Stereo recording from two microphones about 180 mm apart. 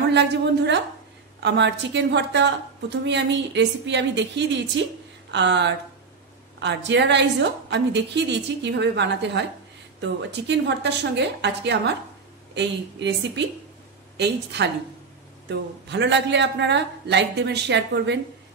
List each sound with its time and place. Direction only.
0.1 s a woman's voice: 70° right (ahead or behind)